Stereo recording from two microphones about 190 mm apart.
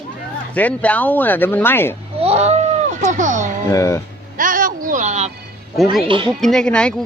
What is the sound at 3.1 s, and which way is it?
Music, 40° right (ahead or behind).